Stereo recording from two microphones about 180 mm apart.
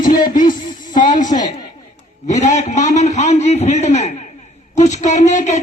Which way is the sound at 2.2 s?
40° left (ahead or behind).